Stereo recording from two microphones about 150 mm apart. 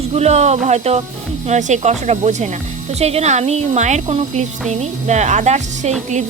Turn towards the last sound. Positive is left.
turn(degrees=-50)  # may be behind; listen again after turning